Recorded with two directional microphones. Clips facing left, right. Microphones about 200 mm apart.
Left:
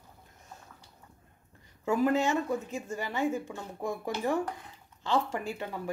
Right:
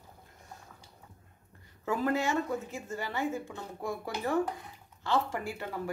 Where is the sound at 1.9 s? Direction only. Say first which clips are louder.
Left 3 dB; 15° left (ahead or behind).